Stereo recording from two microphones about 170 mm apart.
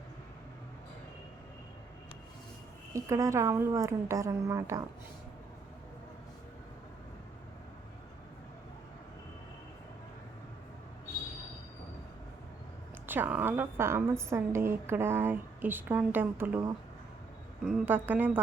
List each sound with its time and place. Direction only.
2.9 s a woman's voice: 15° right (ahead or behind)
13.1 s a woman's voice: 10° right (ahead or behind)